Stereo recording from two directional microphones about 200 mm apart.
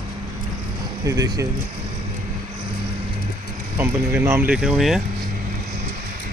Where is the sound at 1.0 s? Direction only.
15° right (ahead or behind).